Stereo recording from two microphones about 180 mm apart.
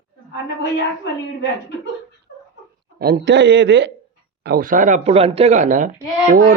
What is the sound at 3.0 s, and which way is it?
Speech, 65° right (ahead or behind).